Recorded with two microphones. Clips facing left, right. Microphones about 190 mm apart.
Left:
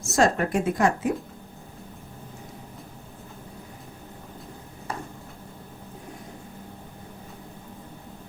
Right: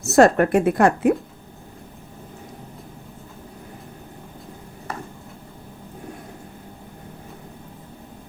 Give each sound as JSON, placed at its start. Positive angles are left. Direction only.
{"t": 0.0, "sound": "speech", "side_deg": -65}